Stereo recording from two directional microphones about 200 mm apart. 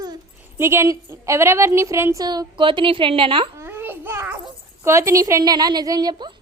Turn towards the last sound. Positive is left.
turn(degrees=-20)  # may be behind; listen again after turning